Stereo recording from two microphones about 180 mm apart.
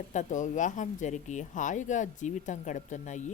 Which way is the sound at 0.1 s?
45° left (ahead or behind).